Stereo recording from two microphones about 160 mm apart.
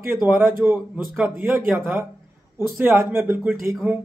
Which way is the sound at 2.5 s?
15° right (ahead or behind).